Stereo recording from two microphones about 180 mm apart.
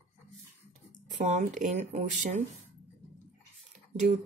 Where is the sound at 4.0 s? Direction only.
40° right (ahead or behind).